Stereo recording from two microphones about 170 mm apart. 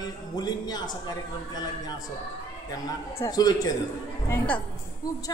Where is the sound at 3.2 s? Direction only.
20° left (ahead or behind).